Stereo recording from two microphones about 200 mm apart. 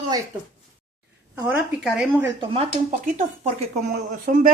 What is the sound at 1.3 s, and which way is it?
Speech, 5° right (ahead or behind).